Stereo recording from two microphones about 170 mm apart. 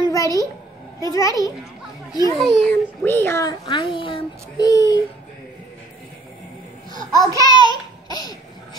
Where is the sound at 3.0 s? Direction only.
15° left (ahead or behind).